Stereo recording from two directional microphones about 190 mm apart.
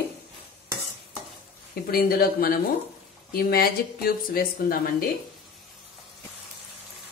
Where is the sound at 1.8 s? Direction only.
50° left (ahead or behind).